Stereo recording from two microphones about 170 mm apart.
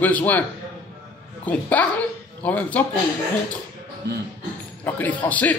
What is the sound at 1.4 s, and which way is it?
Speech, 10° left (ahead or behind).